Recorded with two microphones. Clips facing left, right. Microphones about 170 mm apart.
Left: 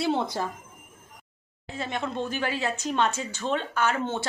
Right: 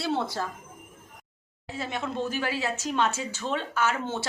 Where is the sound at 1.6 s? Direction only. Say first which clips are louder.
Left 1 dB; 5° right (ahead or behind).